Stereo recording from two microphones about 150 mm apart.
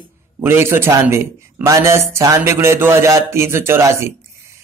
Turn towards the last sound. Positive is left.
turn(degrees=-20)  # may be behind; listen again after turning